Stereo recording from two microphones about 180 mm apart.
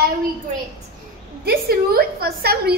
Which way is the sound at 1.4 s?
60° right (ahead or behind).